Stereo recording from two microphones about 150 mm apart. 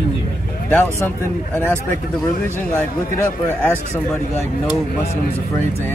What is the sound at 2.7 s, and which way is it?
Speech, 15° left (ahead or behind).